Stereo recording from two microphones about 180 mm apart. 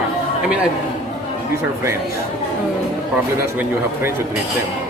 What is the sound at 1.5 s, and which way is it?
Speech, 15° right (ahead or behind).